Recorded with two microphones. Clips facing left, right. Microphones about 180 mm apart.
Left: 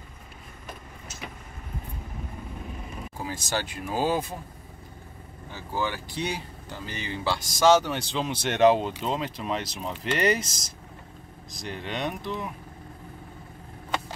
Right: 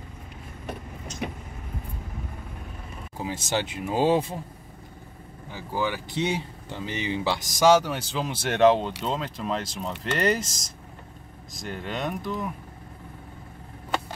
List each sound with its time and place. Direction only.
3.2 s speech: 20° right (ahead or behind)
5.5 s speech: 15° right (ahead or behind)
11.6 s speech: centre (ahead or behind)